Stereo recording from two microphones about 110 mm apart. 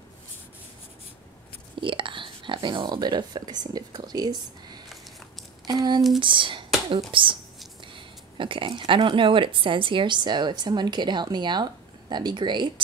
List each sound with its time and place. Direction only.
1.8 s speech: 50° right (ahead or behind)
6.1 s speech: 50° right (ahead or behind)